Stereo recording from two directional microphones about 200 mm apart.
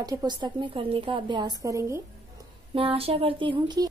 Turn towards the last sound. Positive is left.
turn(degrees=-20)  # may be behind; listen again after turning